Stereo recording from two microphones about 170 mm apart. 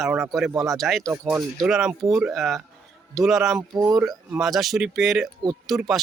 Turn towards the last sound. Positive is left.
turn(degrees=0)  # may be behind; listen again after turning